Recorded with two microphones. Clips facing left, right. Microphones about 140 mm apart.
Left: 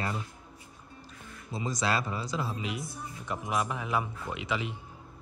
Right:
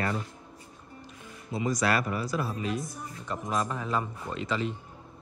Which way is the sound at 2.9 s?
5° left (ahead or behind).